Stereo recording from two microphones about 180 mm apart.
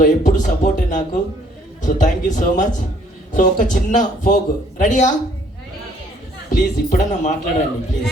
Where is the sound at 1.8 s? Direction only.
45° left (ahead or behind).